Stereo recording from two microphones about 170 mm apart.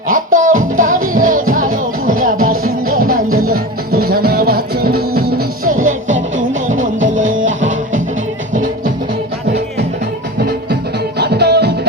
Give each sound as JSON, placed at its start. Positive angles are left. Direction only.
{"t": 0.1, "sound": "music", "side_deg": -50}
{"t": 5.6, "sound": "music", "side_deg": -50}
{"t": 7.2, "sound": "music", "side_deg": -50}
{"t": 11.2, "sound": "music", "side_deg": -75}